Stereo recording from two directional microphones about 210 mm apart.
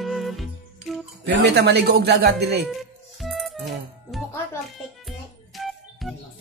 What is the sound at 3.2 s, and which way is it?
Music, centre (ahead or behind).